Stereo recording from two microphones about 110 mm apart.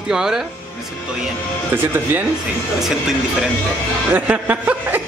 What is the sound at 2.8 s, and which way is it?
Speech, 5° right (ahead or behind).